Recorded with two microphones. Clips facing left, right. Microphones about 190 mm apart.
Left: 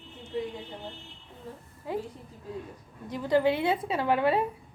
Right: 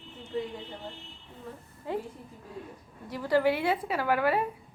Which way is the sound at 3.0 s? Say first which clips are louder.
Left 1 dB; 20° left (ahead or behind).